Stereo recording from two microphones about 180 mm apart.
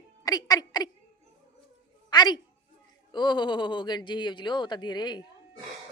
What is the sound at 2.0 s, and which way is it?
A woman's voice, 25° left (ahead or behind).